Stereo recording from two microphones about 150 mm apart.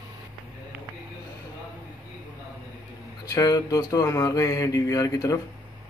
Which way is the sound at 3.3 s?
25° left (ahead or behind).